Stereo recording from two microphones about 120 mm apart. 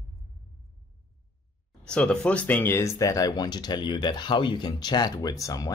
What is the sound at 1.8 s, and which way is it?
Speech, 5° left (ahead or behind).